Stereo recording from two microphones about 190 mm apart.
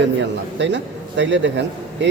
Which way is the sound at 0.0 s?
70° right (ahead or behind).